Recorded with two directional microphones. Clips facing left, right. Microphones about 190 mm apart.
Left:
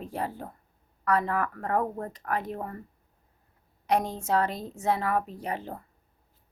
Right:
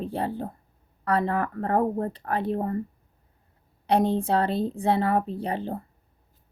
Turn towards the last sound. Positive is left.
turn(degrees=-30)  # may be behind; listen again after turning